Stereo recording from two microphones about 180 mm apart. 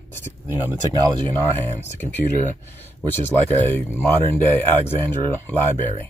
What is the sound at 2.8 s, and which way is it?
Speech, 10° left (ahead or behind).